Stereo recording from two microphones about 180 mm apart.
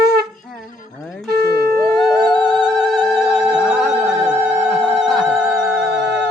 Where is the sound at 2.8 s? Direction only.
Centre (ahead or behind).